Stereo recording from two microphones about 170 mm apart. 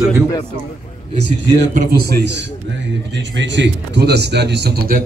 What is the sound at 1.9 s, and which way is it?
Speech, 80° right.